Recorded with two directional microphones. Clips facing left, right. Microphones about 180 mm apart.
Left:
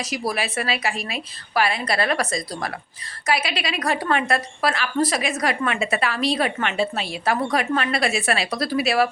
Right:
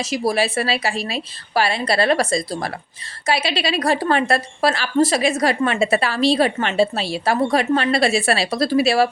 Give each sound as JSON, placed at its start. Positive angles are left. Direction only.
{"t": 0.0, "sound": "a woman's voice", "side_deg": -30}